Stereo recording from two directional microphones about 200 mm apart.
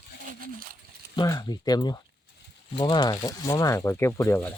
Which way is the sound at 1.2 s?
20° left (ahead or behind).